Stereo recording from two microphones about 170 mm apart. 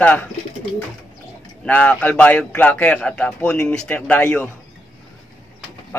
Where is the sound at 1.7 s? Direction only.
10° left (ahead or behind).